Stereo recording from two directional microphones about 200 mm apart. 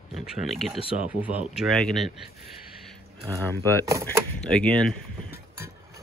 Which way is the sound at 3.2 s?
15° right (ahead or behind).